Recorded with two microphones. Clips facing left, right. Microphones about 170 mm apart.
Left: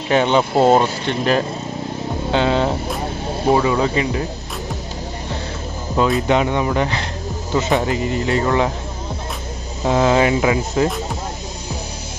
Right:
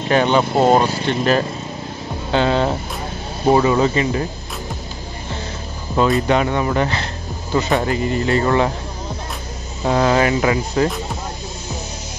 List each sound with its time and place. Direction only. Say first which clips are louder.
0.1 s speech: even; 15° left (ahead or behind)
3.4 s speech: right 2 dB; centre (ahead or behind)
5.9 s speech: right 1 dB; centre (ahead or behind)
6.2 s speech: even; 15° left (ahead or behind)
9.8 s speech: left 1 dB; 5° left (ahead or behind)